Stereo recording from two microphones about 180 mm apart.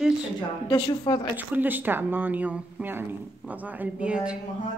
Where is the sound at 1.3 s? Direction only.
10° right (ahead or behind).